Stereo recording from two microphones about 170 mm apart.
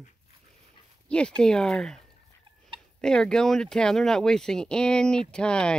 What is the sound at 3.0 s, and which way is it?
Livestock, 5° left (ahead or behind).